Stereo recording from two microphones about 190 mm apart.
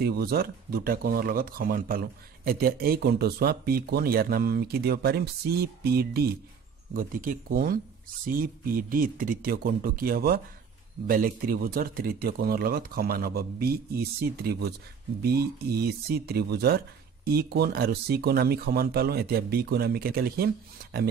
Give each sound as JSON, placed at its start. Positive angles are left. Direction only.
{"t": 0.0, "sound": "speech", "side_deg": -55}